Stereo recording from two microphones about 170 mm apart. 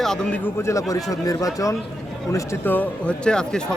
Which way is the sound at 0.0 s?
5° left (ahead or behind).